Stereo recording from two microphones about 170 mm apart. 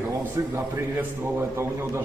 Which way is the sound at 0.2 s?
15° right (ahead or behind).